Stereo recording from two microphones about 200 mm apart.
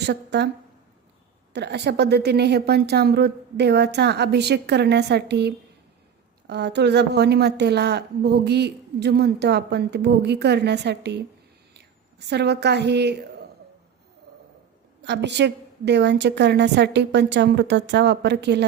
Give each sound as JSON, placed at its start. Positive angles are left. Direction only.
{"t": 0.0, "sound": "a woman's voice", "side_deg": -55}
{"t": 1.5, "sound": "a woman's voice", "side_deg": -55}
{"t": 12.3, "sound": "a woman's voice", "side_deg": -55}
{"t": 15.0, "sound": "a woman's voice", "side_deg": -60}